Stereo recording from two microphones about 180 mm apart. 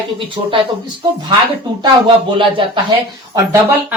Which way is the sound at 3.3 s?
15° right (ahead or behind).